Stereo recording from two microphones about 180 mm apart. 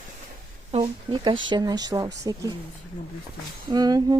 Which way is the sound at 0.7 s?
30° right (ahead or behind).